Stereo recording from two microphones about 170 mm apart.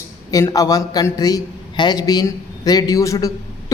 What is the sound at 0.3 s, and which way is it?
A man's voice, 20° left (ahead or behind).